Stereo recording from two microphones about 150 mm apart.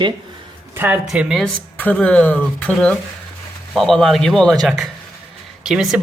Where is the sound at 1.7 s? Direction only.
10° left (ahead or behind).